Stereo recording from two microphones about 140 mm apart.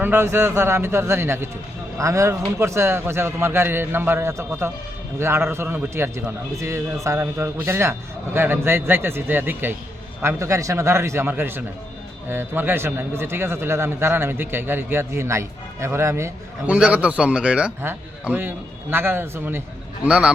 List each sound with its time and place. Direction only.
0.0 s a man's voice: 15° right (ahead or behind)
16.7 s a man's voice: 10° right (ahead or behind)